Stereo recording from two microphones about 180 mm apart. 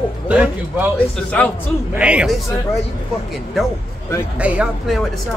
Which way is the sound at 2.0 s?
5° right (ahead or behind).